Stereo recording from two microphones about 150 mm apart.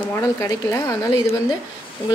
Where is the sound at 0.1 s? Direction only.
20° left (ahead or behind).